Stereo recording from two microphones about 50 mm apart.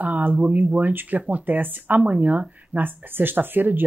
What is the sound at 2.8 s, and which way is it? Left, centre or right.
Speech, right.